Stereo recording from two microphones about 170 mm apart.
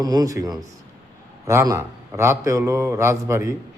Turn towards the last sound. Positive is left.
turn(degrees=-20)  # may be behind; listen again after turning